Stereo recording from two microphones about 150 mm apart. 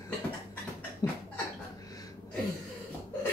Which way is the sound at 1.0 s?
25° left (ahead or behind).